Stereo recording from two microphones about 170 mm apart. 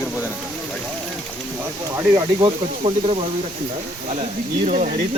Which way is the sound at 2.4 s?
35° right (ahead or behind).